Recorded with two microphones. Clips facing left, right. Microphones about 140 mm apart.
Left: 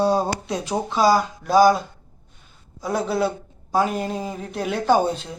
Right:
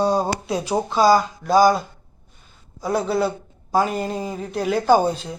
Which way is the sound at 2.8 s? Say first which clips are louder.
Right 1 dB; centre (ahead or behind).